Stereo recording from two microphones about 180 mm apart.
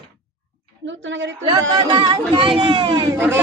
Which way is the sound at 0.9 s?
90° right.